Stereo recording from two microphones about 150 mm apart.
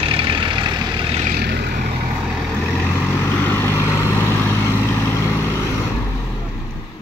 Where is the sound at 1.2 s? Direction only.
90° right.